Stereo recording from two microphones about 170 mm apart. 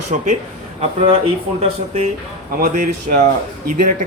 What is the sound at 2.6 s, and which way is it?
Speech, 50° right (ahead or behind).